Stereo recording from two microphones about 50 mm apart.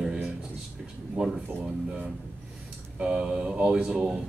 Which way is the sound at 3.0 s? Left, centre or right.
Centre.